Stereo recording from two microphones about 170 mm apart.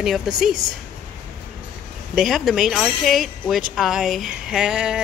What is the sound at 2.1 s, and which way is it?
Speech, centre (ahead or behind).